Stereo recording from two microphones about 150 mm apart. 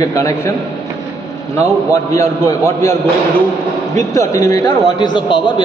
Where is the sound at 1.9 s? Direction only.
20° left (ahead or behind).